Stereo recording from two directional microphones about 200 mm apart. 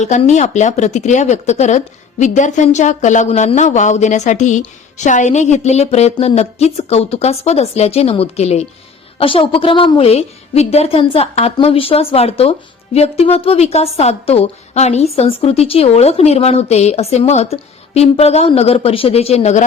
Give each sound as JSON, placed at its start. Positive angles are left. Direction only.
{"t": 0.0, "sound": "a woman's voice", "side_deg": 35}